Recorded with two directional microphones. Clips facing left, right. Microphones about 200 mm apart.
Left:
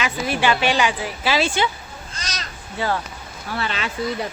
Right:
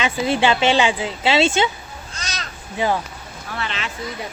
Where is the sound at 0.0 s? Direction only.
25° right (ahead or behind).